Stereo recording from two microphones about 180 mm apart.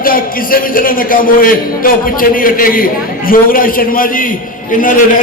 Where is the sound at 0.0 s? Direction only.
50° left (ahead or behind).